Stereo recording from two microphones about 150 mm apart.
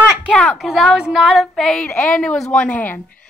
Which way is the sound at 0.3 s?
5° left (ahead or behind).